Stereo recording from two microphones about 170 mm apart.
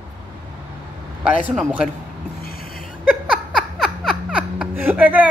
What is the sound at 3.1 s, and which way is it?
Laughter, centre (ahead or behind).